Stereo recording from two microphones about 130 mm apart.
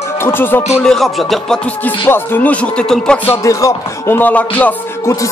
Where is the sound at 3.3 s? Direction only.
25° left (ahead or behind).